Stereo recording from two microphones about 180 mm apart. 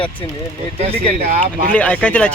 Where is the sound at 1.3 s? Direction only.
45° right (ahead or behind).